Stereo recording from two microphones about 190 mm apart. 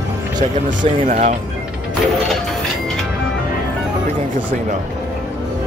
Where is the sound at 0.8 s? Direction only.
40° right (ahead or behind).